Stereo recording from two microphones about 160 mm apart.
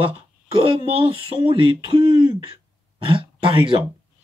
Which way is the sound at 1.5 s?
30° right (ahead or behind).